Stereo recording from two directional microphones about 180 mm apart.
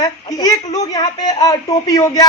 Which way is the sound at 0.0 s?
20° left (ahead or behind).